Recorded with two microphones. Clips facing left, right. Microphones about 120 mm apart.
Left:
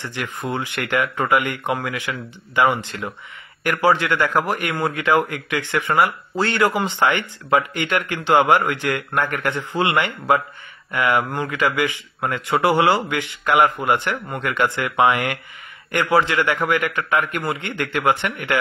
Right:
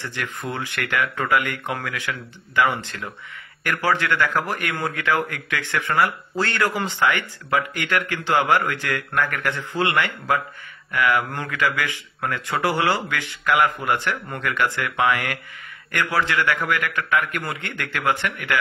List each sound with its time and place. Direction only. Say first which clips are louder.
0.0 s a man's voice: left 2 dB; 15° left (ahead or behind)